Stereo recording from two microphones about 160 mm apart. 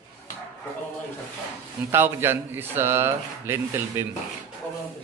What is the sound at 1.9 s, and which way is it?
A man's voice, 15° right (ahead or behind).